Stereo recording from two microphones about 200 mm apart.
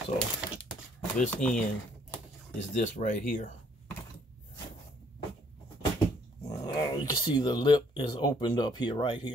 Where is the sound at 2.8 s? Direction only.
40° left (ahead or behind).